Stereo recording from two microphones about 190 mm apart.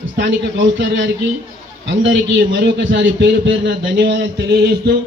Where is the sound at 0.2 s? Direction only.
70° right (ahead or behind).